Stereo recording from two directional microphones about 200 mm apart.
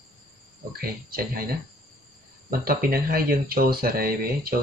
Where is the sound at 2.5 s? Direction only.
45° right (ahead or behind).